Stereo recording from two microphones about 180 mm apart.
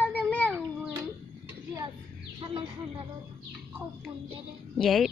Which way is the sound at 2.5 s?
30° right (ahead or behind).